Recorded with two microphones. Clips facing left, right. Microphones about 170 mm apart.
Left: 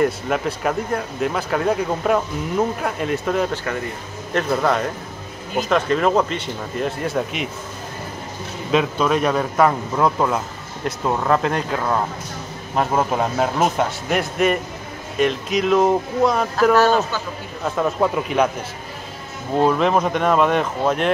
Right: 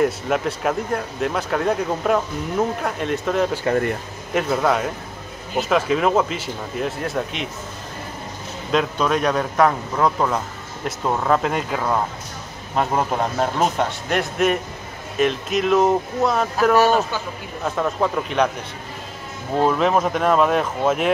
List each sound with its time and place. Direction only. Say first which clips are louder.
0.0 s speech: even; centre (ahead or behind)
3.7 s speech: right 6 dB; 30° right (ahead or behind)
4.3 s speech: even; 5° right (ahead or behind)
8.7 s speech: left 2 dB; 5° left (ahead or behind)
16.7 s speech: even; 15° right (ahead or behind)
17.6 s speech: left 2 dB; 5° left (ahead or behind)
19.6 s speech: left 1 dB; centre (ahead or behind)